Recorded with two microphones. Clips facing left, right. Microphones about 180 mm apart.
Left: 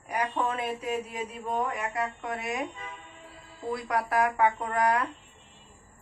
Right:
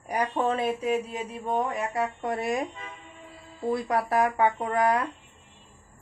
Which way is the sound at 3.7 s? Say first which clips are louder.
Right 3 dB; 30° right (ahead or behind).